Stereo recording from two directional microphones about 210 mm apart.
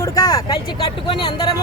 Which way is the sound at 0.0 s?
15° left (ahead or behind).